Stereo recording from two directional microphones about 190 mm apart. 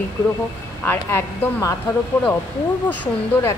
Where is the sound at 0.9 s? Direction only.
10° left (ahead or behind).